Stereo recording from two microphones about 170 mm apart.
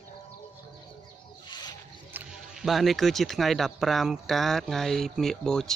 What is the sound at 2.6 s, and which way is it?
Speech, centre (ahead or behind).